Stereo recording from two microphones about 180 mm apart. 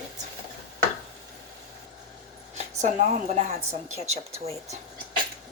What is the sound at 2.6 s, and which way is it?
A woman's voice, 35° right (ahead or behind).